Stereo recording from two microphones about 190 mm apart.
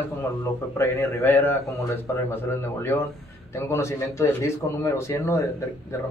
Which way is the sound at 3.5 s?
15° left (ahead or behind).